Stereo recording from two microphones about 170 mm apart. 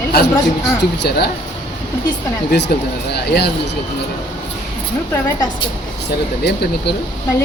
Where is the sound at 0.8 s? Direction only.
70° left (ahead or behind).